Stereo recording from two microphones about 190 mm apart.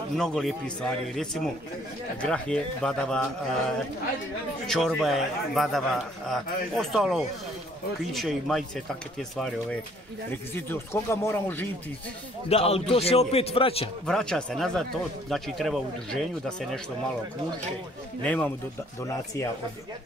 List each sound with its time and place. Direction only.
0.2 s speech: centre (ahead or behind)
10.5 s speech: 10° left (ahead or behind)
12.4 s a man's voice: 30° left (ahead or behind)
14.0 s speech: 5° left (ahead or behind)
18.2 s speech: 10° left (ahead or behind)